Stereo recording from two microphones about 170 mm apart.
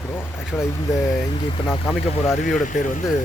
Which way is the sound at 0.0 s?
10° left (ahead or behind).